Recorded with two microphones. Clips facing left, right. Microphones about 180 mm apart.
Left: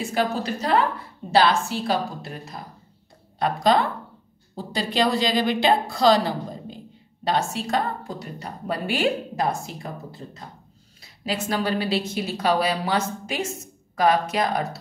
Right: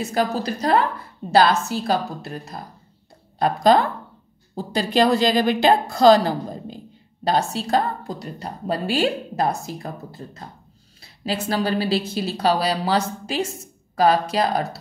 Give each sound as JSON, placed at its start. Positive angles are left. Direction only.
{"t": 0.0, "sound": "a woman's voice", "side_deg": -40}
{"t": 7.2, "sound": "a woman's voice", "side_deg": -35}
{"t": 11.0, "sound": "a woman's voice", "side_deg": -35}